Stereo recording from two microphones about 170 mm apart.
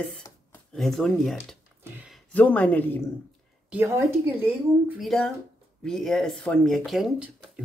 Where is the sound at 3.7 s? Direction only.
15° right (ahead or behind).